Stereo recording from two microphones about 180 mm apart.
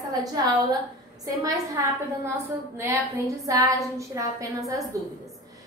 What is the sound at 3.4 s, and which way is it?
A woman's voice, 20° right (ahead or behind).